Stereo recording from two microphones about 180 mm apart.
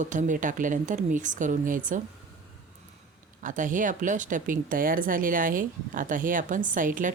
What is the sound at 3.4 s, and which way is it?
Speech, 45° right (ahead or behind).